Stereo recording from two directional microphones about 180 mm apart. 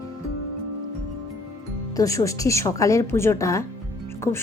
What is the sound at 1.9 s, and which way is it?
A woman's voice, 20° left (ahead or behind).